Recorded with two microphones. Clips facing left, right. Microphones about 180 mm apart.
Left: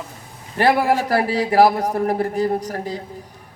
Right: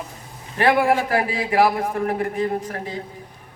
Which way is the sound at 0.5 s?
35° left (ahead or behind).